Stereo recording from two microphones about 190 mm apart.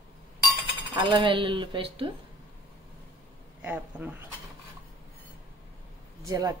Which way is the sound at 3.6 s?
10° right (ahead or behind).